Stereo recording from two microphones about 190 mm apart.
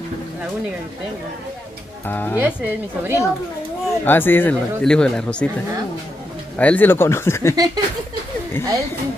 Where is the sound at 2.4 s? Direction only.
5° right (ahead or behind).